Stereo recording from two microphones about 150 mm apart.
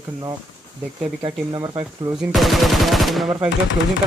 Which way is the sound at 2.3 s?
Centre (ahead or behind).